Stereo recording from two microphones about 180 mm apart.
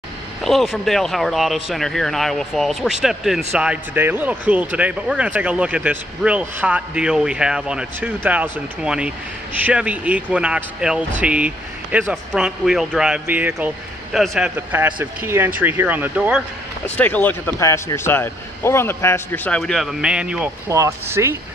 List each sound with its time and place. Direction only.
0.4 s speech: centre (ahead or behind)
14.7 s speech: 10° right (ahead or behind)
16.8 s speech: 10° left (ahead or behind)
20.6 s speech: 15° right (ahead or behind)